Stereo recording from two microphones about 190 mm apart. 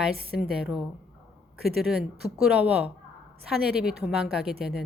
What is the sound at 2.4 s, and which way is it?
A woman's voice, 5° right (ahead or behind).